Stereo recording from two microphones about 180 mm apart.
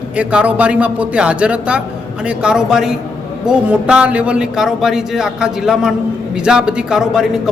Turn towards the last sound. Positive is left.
turn(degrees=-5)  # may be behind; listen again after turning